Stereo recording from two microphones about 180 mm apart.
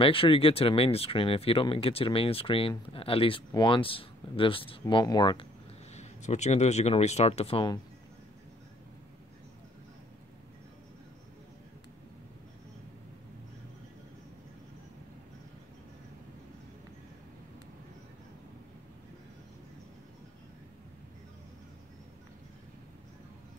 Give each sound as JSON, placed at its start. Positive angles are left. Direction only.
{"t": 0.0, "sound": "speech", "side_deg": 30}
{"t": 5.9, "sound": "speech", "side_deg": 40}